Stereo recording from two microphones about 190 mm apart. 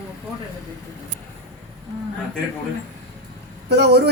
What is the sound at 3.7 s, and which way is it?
Speech, 60° right (ahead or behind).